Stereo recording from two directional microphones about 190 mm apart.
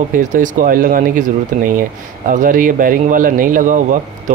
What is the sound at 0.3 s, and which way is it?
Speech, 45° right (ahead or behind).